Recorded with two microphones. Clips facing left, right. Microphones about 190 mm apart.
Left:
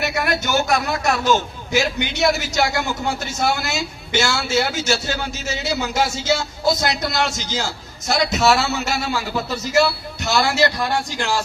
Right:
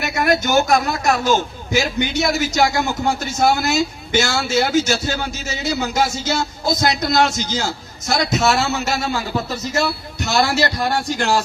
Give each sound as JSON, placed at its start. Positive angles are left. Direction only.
{"t": 0.0, "sound": "a man's voice", "side_deg": -45}
{"t": 10.3, "sound": "a man's voice", "side_deg": -45}